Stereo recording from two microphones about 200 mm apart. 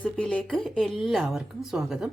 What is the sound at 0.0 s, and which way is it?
Speech, 5° left (ahead or behind).